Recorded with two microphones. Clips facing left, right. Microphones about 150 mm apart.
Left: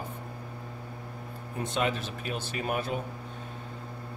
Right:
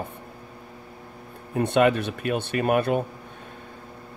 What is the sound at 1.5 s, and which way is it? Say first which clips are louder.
Speech: right 10 dB; 65° right (ahead or behind).